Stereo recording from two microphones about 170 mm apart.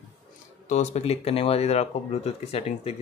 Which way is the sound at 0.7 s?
40° left (ahead or behind).